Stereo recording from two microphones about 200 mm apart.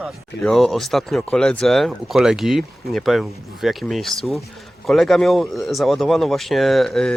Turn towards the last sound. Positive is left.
turn(degrees=0)  # may be behind; listen again after turning